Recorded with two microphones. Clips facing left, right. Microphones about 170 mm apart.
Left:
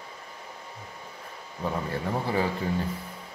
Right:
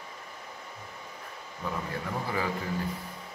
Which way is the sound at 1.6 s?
30° left (ahead or behind).